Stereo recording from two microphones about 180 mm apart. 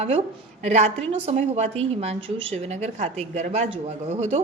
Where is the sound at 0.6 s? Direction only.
40° right (ahead or behind).